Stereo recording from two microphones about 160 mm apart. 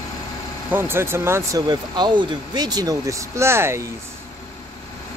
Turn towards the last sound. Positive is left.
turn(degrees=-15)  # may be behind; listen again after turning